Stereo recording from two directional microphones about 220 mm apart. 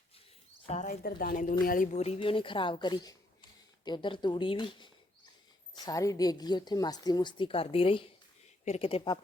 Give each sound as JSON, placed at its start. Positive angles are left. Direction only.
{"t": 0.7, "sound": "speech", "side_deg": 35}